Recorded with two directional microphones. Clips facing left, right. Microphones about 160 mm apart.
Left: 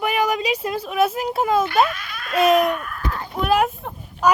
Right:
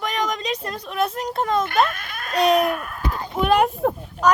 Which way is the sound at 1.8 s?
50° right (ahead or behind).